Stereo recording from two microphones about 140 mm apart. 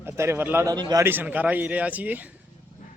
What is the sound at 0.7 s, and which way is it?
Speech, 30° right (ahead or behind).